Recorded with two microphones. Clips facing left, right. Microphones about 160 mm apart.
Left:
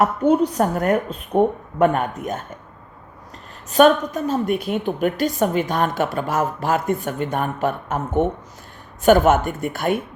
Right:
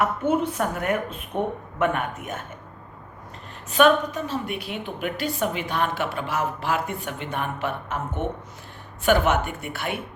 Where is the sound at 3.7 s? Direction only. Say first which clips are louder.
Left 4 dB; 40° left (ahead or behind).